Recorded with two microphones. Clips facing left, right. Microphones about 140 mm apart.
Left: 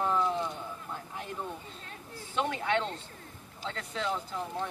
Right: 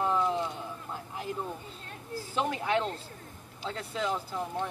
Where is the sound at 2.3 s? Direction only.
5° right (ahead or behind).